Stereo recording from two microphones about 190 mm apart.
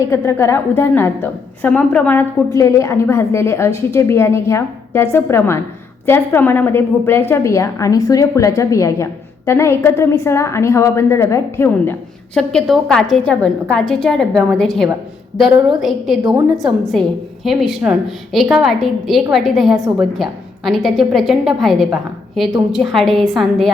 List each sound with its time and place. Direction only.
0.0 s a woman's voice: 15° left (ahead or behind)